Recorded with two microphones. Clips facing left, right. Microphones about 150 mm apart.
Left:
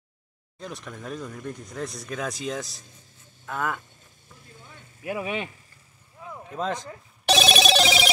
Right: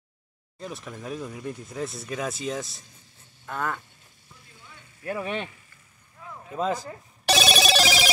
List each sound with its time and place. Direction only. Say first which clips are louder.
0.6 s speech: right 1 dB; centre (ahead or behind)
5.0 s speech: left 1 dB; 10° left (ahead or behind)
6.2 s a sound: left 3 dB; 20° left (ahead or behind)
6.5 s telephone bell ringing: right 2 dB; 5° right (ahead or behind)